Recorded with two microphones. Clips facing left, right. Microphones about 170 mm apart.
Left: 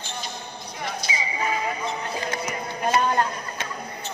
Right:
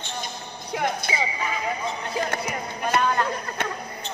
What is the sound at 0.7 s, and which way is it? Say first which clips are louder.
Speech: right 6 dB; 55° right (ahead or behind).